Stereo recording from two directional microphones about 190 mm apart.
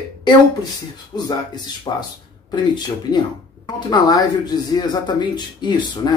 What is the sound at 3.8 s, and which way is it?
Speech, 20° left (ahead or behind).